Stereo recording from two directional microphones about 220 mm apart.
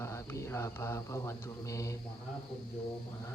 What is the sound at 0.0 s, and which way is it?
Speech, 10° left (ahead or behind).